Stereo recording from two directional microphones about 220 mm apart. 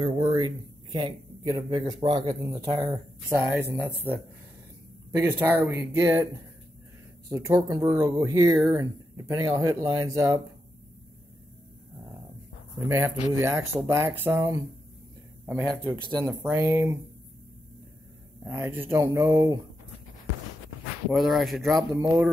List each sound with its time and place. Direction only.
0.0 s speech: 20° right (ahead or behind)
5.1 s speech: 10° right (ahead or behind)
7.2 s speech: 15° right (ahead or behind)
12.8 s speech: 10° right (ahead or behind)
16.3 s speech: 10° right (ahead or behind)
18.4 s speech: 10° right (ahead or behind)
21.1 s speech: centre (ahead or behind)
21.9 s speech: 15° right (ahead or behind)